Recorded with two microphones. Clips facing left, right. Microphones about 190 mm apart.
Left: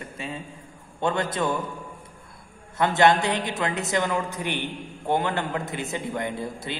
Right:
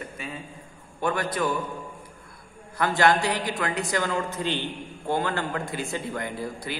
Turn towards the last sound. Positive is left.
turn(degrees=25)  # may be behind; listen again after turning